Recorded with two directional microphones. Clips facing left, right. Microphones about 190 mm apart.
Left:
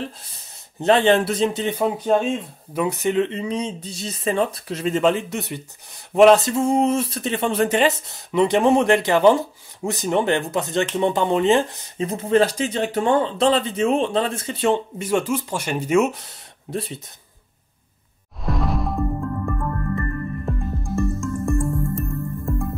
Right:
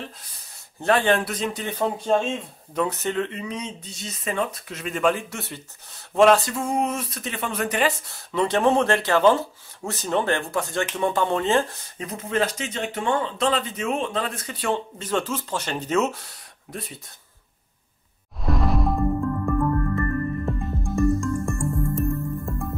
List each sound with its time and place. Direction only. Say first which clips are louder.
0.7 s speech: left 4 dB; 20° left (ahead or behind)
1.8 s speech: left 2 dB; 10° left (ahead or behind)
15.0 s speech: left 5 dB; 10° left (ahead or behind)
16.7 s speech: left 8 dB; 30° left (ahead or behind)
18.4 s music: right 1 dB; centre (ahead or behind)